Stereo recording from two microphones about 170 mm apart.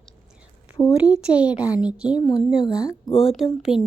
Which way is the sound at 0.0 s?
5° right (ahead or behind).